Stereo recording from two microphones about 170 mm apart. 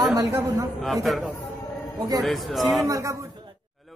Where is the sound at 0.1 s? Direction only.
20° right (ahead or behind).